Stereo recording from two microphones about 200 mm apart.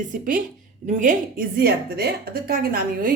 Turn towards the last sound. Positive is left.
turn(degrees=-45)  # may be behind; listen again after turning